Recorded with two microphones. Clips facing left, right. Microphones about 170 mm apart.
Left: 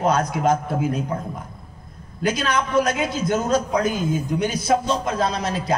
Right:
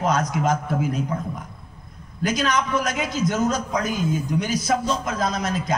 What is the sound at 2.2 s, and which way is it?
A man's voice, 30° left (ahead or behind).